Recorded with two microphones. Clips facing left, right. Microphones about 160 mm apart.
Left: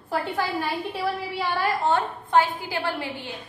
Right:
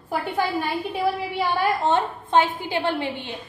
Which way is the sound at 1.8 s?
20° right (ahead or behind).